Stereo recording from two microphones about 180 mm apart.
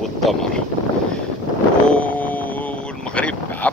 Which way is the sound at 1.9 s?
10° left (ahead or behind).